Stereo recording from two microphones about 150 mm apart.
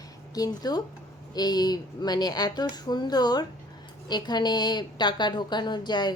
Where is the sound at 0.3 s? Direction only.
25° left (ahead or behind).